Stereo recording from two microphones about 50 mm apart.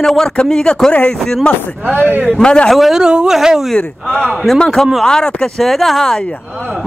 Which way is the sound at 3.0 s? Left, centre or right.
Centre.